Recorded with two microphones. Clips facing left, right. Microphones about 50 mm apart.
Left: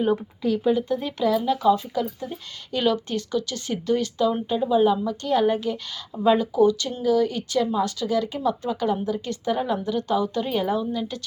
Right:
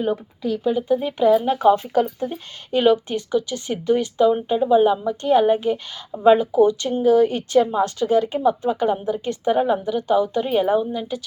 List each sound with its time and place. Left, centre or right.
0.0 s speech: centre
1.2 s a woman's voice: right
2.7 s speech: right
9.8 s speech: centre